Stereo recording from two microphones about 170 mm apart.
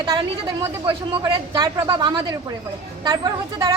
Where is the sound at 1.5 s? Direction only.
25° right (ahead or behind).